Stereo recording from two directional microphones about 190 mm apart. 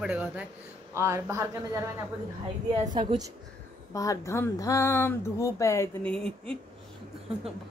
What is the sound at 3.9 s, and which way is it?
Speech, 15° left (ahead or behind).